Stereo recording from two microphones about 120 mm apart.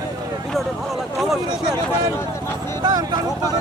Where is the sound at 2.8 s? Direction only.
35° right (ahead or behind).